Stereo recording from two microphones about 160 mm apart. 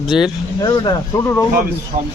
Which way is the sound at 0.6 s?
25° left (ahead or behind).